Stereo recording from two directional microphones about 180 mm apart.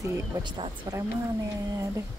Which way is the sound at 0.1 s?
25° right (ahead or behind).